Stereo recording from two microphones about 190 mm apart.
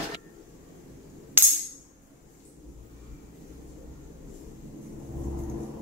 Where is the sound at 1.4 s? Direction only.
10° right (ahead or behind).